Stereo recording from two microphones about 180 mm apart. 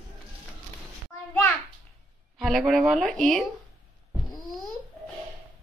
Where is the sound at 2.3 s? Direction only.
Centre (ahead or behind).